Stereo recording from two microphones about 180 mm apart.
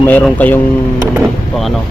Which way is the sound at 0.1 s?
10° left (ahead or behind).